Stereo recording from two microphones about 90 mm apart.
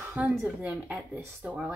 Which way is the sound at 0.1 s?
25° right (ahead or behind).